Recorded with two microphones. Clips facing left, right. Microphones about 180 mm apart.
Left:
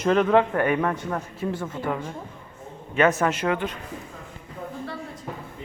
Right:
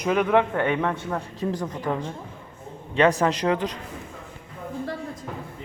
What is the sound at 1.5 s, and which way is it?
Speech, 40° right (ahead or behind).